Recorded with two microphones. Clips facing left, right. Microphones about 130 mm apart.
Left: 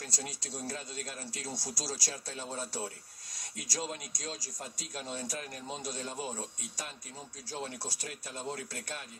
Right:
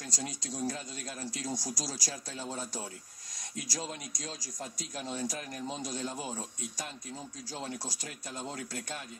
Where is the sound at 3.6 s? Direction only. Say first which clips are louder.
Left 1 dB; 25° left (ahead or behind).